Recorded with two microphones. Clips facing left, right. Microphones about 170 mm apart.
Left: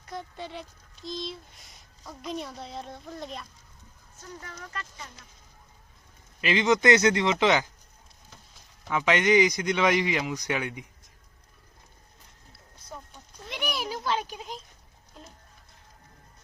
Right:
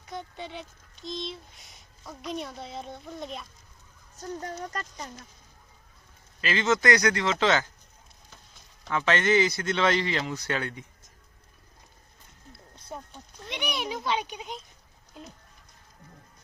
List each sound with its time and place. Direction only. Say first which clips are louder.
0.0 s speech: even; centre (ahead or behind)
4.2 s speech: right 8 dB; 40° right (ahead or behind)
6.4 s speech: left 2 dB; 15° left (ahead or behind)
8.9 s speech: left 1 dB; 15° left (ahead or behind)
13.4 s a sound: even; centre (ahead or behind)